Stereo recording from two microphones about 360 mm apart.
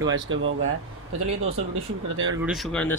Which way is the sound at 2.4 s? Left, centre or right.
Centre.